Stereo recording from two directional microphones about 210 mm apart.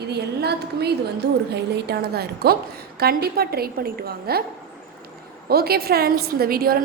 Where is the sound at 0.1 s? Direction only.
50° right (ahead or behind).